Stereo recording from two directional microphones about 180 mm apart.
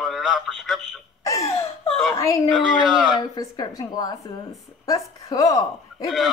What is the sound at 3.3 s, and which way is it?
A woman's voice, 20° left (ahead or behind).